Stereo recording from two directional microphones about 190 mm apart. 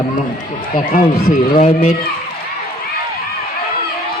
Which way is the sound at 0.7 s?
45° left (ahead or behind).